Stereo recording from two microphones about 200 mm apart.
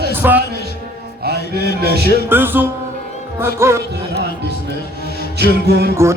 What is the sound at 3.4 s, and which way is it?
Speech, 15° right (ahead or behind).